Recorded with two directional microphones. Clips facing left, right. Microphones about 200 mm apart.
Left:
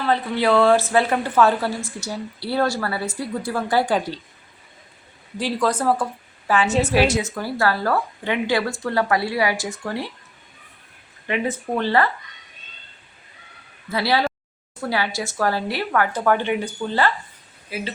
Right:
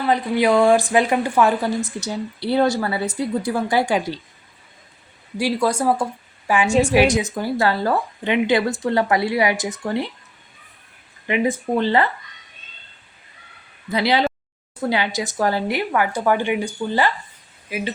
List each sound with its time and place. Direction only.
0.0 s speech: 15° right (ahead or behind)
5.4 s a woman's voice: 10° right (ahead or behind)
11.3 s speech: 15° right (ahead or behind)
13.9 s speech: 20° right (ahead or behind)